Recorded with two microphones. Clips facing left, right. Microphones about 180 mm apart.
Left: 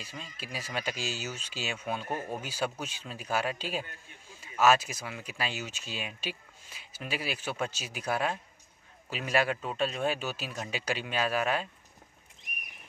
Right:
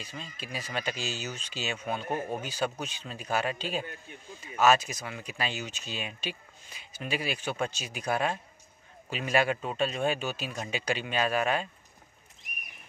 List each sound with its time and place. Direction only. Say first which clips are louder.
0.0 s speech: right 2 dB; 5° left (ahead or behind)
2.0 s speech: right 3 dB; 20° right (ahead or behind)
2.3 s speech: right 2 dB; 5° left (ahead or behind)